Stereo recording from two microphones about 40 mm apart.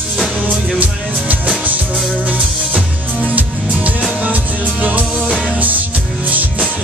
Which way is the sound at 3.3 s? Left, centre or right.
Right.